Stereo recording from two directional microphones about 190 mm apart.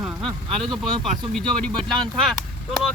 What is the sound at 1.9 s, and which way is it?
Speech, 5° left (ahead or behind).